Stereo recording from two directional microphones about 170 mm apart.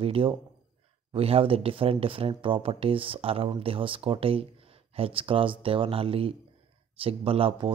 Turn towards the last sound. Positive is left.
turn(degrees=-30)  # may be behind; listen again after turning